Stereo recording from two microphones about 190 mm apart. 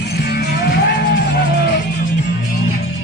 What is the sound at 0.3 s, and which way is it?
Music, 60° left (ahead or behind).